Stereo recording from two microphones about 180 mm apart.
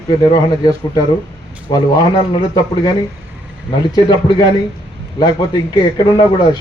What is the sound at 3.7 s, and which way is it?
A man's voice, 25° left (ahead or behind).